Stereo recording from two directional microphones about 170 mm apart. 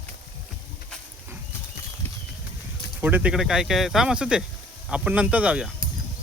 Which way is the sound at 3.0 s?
10° right (ahead or behind).